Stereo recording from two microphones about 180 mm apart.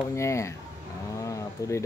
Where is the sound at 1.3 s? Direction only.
20° left (ahead or behind).